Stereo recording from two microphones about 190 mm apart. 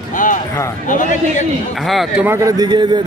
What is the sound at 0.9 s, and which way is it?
Speech, 40° left (ahead or behind).